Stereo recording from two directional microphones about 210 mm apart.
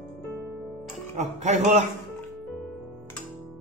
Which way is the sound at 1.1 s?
35° right (ahead or behind).